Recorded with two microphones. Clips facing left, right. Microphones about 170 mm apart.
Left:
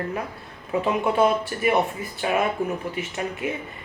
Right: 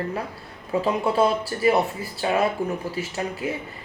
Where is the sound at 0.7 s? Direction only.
30° right (ahead or behind).